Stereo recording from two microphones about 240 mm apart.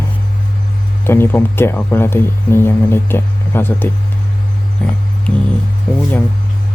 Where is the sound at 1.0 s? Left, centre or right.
Centre.